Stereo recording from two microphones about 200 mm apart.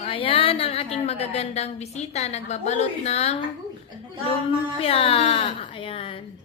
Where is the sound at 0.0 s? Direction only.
25° left (ahead or behind).